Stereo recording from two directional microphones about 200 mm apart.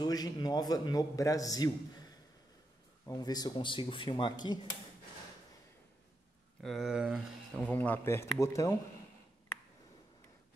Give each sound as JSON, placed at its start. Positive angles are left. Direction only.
{"t": 0.0, "sound": "a man's voice", "side_deg": 20}
{"t": 6.6, "sound": "speech", "side_deg": 0}